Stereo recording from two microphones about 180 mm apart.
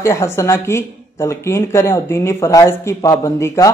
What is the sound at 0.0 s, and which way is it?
Speech, 15° left (ahead or behind).